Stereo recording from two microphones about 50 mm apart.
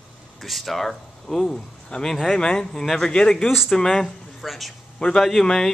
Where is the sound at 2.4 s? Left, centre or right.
Centre.